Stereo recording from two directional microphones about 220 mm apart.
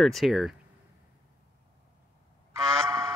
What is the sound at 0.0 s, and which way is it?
Speech, centre (ahead or behind).